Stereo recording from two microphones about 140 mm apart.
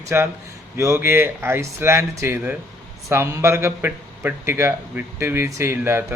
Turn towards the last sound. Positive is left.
turn(degrees=-20)  # may be behind; listen again after turning